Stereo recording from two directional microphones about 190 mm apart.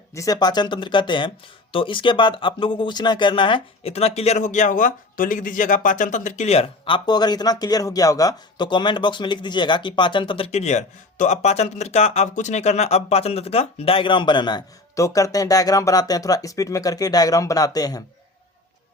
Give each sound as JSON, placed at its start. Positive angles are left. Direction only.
{"t": 0.1, "sound": "speech", "side_deg": 20}